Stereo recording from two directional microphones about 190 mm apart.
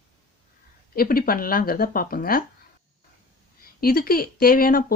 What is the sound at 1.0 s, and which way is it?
Speech, 50° left (ahead or behind).